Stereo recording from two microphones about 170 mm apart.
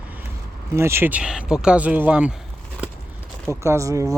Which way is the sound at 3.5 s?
15° right (ahead or behind).